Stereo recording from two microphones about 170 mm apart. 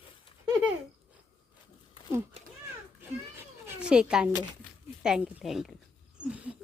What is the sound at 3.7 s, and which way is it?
Speech, 5° right (ahead or behind).